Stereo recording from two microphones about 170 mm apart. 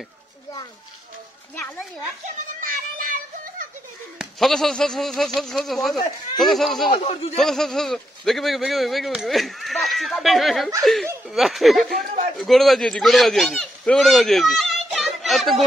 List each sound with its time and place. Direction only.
1.5 s a child's voice: 10° left (ahead or behind)
2.7 s children playing: 50° right (ahead or behind)
4.2 s speech: centre (ahead or behind)
6.9 s a man's voice: 35° left (ahead or behind)
7.3 s speech: centre (ahead or behind)